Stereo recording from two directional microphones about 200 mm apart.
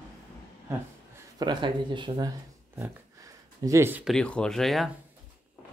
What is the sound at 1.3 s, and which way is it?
Speech, 25° right (ahead or behind).